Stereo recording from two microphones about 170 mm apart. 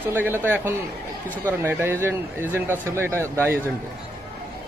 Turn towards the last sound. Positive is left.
turn(degrees=-15)  # may be behind; listen again after turning